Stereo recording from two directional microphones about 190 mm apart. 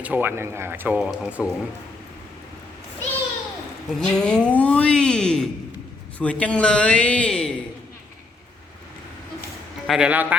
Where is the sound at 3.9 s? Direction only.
5° left (ahead or behind).